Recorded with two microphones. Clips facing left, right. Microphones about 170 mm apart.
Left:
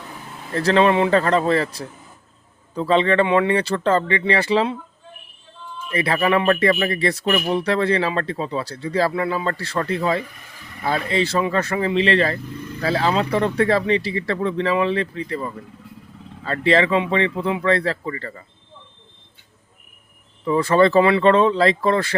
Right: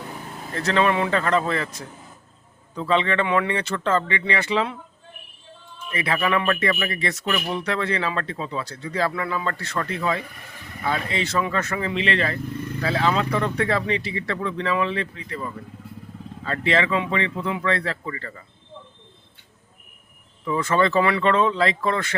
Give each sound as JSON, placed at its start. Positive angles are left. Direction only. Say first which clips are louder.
{"t": 0.5, "sound": "speech", "louder": "left 5 dB", "side_deg": 35}
{"t": 5.9, "sound": "speech", "louder": "left 4 dB", "side_deg": 35}
{"t": 20.4, "sound": "speech", "louder": "left 5 dB", "side_deg": 35}